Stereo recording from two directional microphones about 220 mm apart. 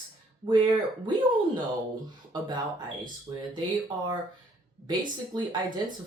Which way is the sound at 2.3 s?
20° right (ahead or behind).